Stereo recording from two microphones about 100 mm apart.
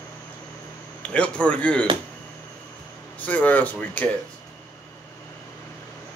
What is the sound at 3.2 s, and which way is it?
Speech, 15° left (ahead or behind).